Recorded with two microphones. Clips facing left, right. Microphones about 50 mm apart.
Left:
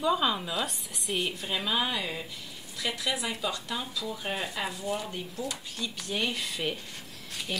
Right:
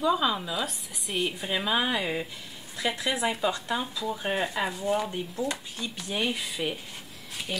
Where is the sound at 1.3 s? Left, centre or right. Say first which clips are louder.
Right 3 dB; centre.